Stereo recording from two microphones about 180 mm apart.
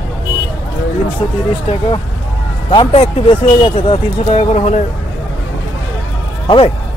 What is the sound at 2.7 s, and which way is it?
Speech, 30° left (ahead or behind).